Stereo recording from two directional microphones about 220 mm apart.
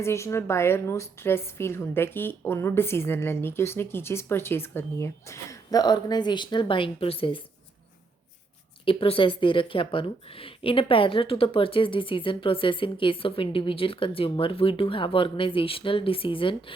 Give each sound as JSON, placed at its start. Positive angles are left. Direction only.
{"t": 0.0, "sound": "a woman's voice", "side_deg": 10}
{"t": 8.8, "sound": "speech", "side_deg": 25}